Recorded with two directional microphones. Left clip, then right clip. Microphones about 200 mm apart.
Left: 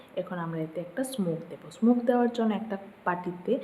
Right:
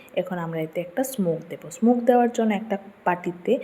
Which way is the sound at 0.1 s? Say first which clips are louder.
Right 7 dB; 15° right (ahead or behind).